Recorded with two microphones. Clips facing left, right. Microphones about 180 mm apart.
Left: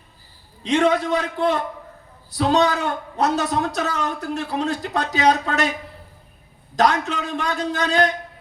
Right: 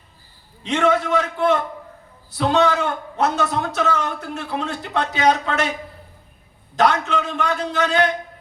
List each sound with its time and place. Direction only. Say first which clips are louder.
0.6 s a man's voice: left 1 dB; 35° left (ahead or behind)
6.7 s a man's voice: right 1 dB; 40° left (ahead or behind)